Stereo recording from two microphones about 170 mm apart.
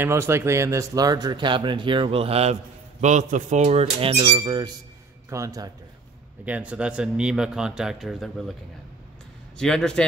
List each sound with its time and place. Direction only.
0.0 s speech: 15° right (ahead or behind); by 2.5 s 35° right (ahead or behind)
3.0 s speech: 45° right (ahead or behind); by 5.7 s 20° right (ahead or behind)
6.4 s speech: 10° right (ahead or behind)
9.6 s speech: 5° left (ahead or behind)